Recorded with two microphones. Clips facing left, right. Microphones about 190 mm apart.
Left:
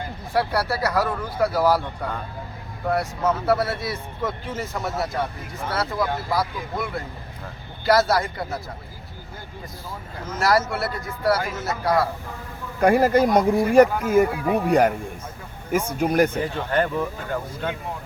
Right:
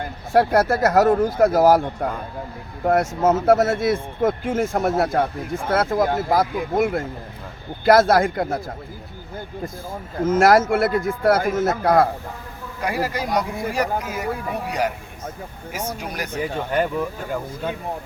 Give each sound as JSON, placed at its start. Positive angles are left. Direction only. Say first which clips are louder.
{"t": 0.3, "sound": "speech", "louder": "right 6 dB", "side_deg": -45}
{"t": 9.9, "sound": "speech", "louder": "right 14 dB", "side_deg": -50}
{"t": 12.8, "sound": "speech", "louder": "left 8 dB", "side_deg": 50}